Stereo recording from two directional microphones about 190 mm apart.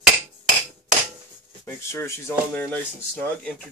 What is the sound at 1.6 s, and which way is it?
Speech, 15° left (ahead or behind).